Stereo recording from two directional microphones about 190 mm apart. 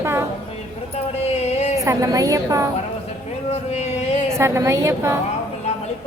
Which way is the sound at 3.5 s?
35° left (ahead or behind).